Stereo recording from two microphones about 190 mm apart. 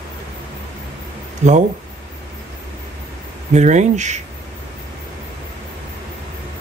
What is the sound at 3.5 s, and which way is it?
Speech, 35° right (ahead or behind).